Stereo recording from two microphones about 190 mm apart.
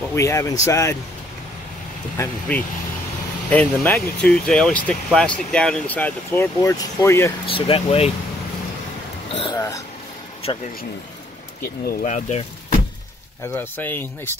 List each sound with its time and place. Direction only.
0.1 s speech: 15° left (ahead or behind)
2.1 s speech: 10° left (ahead or behind)
7.4 s speech: 30° left (ahead or behind)
9.3 s speech: 30° left (ahead or behind)
11.6 s speech: 45° left (ahead or behind)
13.5 s speech: 10° left (ahead or behind)